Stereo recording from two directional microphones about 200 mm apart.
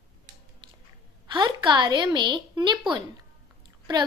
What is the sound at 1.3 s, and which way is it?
A woman's voice, 20° right (ahead or behind).